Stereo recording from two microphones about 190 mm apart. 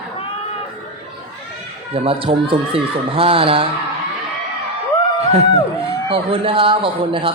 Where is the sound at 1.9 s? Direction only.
30° right (ahead or behind).